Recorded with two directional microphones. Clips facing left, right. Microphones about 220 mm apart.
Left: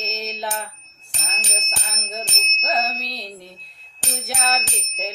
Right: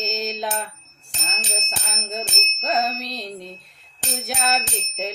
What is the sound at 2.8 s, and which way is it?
Music, 45° right (ahead or behind).